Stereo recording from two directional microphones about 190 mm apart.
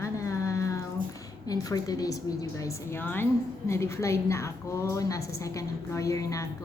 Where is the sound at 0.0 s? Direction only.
15° left (ahead or behind).